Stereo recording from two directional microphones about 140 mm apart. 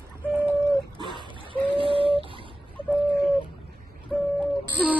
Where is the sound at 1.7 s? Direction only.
40° right (ahead or behind).